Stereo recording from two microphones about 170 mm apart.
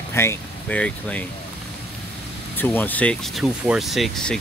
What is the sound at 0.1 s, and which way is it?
Speech, 15° left (ahead or behind).